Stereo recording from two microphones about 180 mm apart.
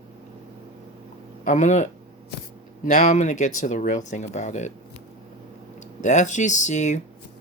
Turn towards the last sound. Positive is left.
turn(degrees=40)  # may be behind; listen again after turning